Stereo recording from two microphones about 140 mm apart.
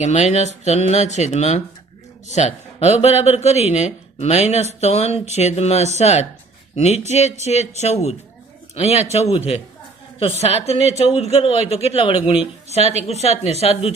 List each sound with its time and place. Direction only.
0.0 s speech: 50° left (ahead or behind)
10.4 s speech: 50° left (ahead or behind)